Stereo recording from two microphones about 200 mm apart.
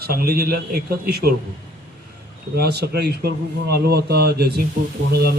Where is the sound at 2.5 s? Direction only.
55° right (ahead or behind).